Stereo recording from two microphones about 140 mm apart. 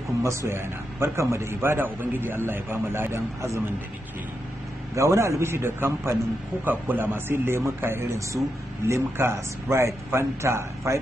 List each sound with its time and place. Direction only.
0.2 s a man's voice: 20° right (ahead or behind)
4.9 s a man's voice: 20° right (ahead or behind)